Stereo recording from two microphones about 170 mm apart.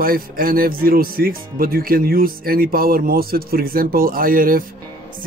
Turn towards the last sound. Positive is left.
turn(degrees=-55)  # may be behind; listen again after turning